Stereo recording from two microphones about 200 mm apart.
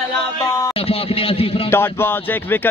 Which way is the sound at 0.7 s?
30° left (ahead or behind).